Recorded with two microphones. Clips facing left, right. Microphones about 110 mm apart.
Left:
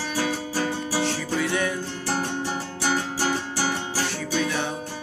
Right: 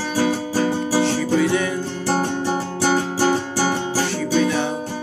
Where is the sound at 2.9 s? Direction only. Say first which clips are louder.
Right 7 dB; 30° right (ahead or behind).